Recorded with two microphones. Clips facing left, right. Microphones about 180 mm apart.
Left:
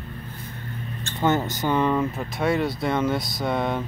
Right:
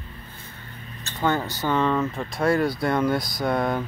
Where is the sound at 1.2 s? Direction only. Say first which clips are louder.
Left 2 dB; 20° left (ahead or behind); by 3.8 s centre (ahead or behind).